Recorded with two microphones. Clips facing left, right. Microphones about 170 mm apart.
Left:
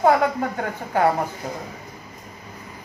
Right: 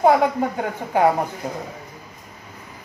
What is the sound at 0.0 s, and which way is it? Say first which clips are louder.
A man's voice: right 2 dB; 15° right (ahead or behind).